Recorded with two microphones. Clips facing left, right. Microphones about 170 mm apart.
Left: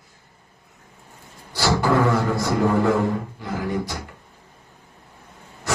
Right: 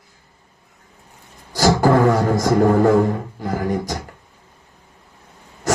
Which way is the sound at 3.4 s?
45° right (ahead or behind).